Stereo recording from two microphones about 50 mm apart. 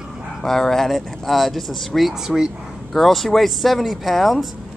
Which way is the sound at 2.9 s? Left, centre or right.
Centre.